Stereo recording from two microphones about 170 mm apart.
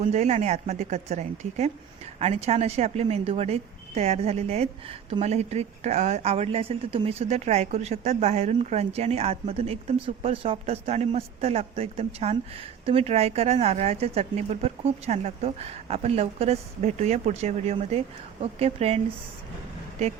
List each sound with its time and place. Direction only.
0.0 s speech: 40° right (ahead or behind)